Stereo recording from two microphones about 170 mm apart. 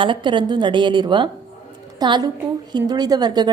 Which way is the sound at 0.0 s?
30° right (ahead or behind).